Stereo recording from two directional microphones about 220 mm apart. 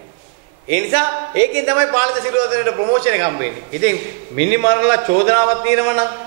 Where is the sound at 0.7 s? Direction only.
15° right (ahead or behind).